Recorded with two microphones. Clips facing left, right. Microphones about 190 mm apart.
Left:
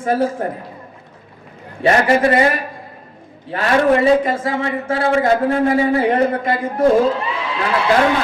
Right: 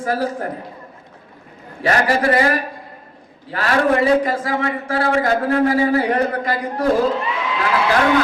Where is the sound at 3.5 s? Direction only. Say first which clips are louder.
Left 3 dB; 25° left (ahead or behind).